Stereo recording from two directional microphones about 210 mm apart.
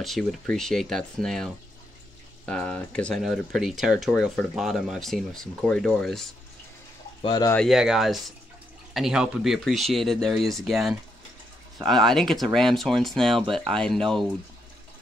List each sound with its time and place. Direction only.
0.0 s speech: centre (ahead or behind)
7.2 s speech: 20° left (ahead or behind)
7.5 s speech: centre (ahead or behind)